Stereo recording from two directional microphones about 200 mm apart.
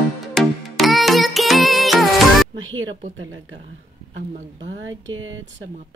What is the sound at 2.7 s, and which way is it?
Speech, 75° right (ahead or behind).